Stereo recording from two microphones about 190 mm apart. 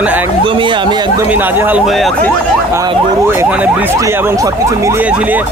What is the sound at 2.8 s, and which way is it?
Speech, 15° right (ahead or behind).